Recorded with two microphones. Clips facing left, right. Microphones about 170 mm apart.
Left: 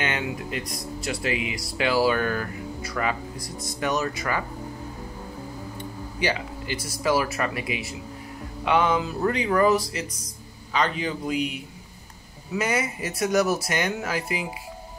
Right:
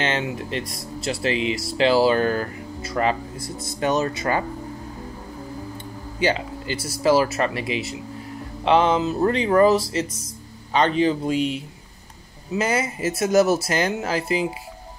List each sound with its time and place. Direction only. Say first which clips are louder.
0.0 s speech: right 3 dB; 25° right (ahead or behind)
6.1 s speech: right 5 dB; 25° right (ahead or behind)